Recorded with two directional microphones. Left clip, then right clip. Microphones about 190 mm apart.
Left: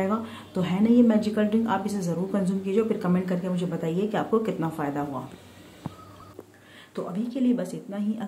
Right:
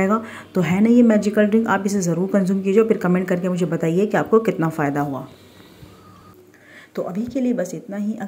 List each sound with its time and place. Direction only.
0.0 s speech: 25° right (ahead or behind)
7.1 s speech: 20° right (ahead or behind)